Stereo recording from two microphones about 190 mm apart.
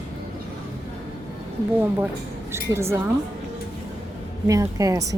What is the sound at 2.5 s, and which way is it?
Speech, 15° right (ahead or behind).